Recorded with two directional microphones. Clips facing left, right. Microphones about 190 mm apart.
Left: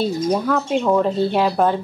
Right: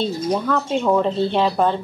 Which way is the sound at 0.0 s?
5° left (ahead or behind).